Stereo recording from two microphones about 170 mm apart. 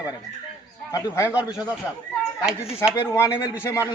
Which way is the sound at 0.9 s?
15° left (ahead or behind).